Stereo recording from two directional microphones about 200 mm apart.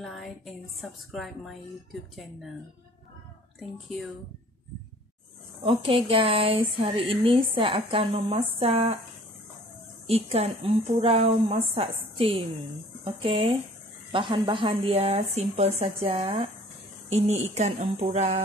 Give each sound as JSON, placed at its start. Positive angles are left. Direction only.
{"t": 0.0, "sound": "a sound", "side_deg": 0}
{"t": 0.7, "sound": "a woman's voice", "side_deg": 0}
{"t": 5.6, "sound": "a woman's voice", "side_deg": -25}
{"t": 10.0, "sound": "a woman's voice", "side_deg": -30}
{"t": 17.6, "sound": "speech", "side_deg": -35}